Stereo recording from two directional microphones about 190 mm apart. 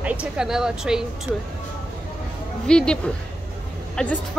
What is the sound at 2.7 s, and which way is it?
Speech, 5° left (ahead or behind).